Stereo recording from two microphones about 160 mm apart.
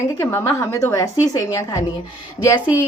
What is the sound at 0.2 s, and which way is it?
A woman's voice, 15° left (ahead or behind).